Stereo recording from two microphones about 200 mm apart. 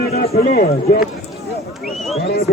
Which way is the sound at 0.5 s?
40° left (ahead or behind).